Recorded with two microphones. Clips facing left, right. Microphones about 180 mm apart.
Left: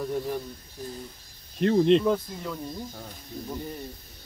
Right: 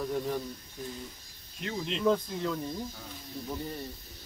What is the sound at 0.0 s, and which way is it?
Speech, 10° left (ahead or behind).